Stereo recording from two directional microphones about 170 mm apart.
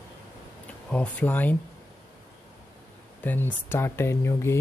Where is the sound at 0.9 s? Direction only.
10° left (ahead or behind).